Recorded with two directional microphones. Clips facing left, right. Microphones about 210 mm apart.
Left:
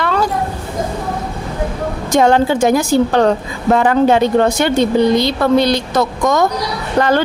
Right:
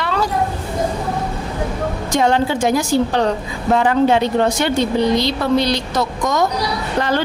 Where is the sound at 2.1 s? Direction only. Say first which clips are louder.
Left 5 dB; 50° left (ahead or behind).